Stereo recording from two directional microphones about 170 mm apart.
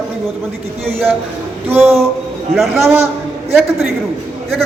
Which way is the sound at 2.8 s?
15° right (ahead or behind).